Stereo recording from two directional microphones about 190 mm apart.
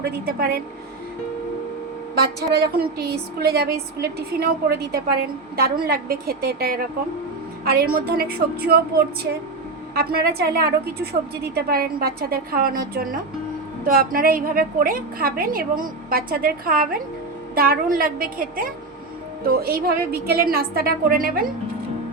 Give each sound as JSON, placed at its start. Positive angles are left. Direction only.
{"t": 0.0, "sound": "a woman's voice", "side_deg": -50}
{"t": 2.1, "sound": "a woman's voice", "side_deg": -55}
{"t": 9.9, "sound": "a woman's voice", "side_deg": -55}